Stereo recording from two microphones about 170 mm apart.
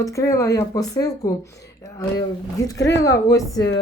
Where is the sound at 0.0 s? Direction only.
20° left (ahead or behind).